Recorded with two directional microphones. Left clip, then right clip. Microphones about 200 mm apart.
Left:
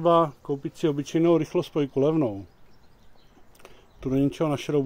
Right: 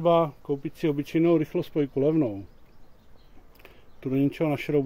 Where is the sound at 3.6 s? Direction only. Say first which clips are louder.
Left 2 dB; 10° left (ahead or behind).